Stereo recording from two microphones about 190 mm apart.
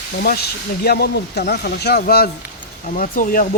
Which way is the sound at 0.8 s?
55° left (ahead or behind).